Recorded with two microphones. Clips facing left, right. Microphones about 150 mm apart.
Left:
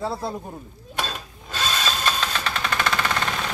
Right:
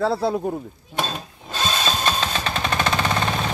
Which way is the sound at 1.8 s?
25° right (ahead or behind).